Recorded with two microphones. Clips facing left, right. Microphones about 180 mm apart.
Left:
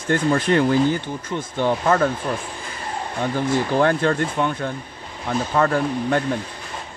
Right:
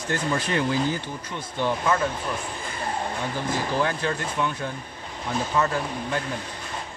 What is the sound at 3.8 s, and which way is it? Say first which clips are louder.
Speech: left 7 dB; 55° left (ahead or behind).